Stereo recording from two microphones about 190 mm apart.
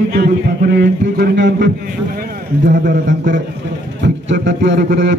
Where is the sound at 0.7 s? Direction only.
60° right (ahead or behind).